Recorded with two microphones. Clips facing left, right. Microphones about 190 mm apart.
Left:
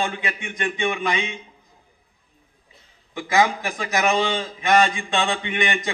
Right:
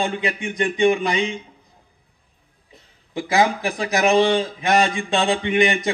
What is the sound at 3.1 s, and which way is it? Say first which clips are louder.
A man's voice: right 1 dB; 35° right (ahead or behind).